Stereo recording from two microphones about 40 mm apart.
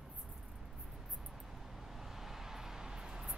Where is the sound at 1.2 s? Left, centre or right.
Centre.